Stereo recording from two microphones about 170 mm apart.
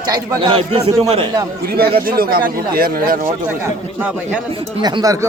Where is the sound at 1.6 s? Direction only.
65° right (ahead or behind).